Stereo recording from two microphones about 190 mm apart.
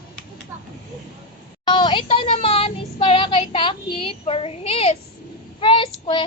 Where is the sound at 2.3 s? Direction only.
30° left (ahead or behind).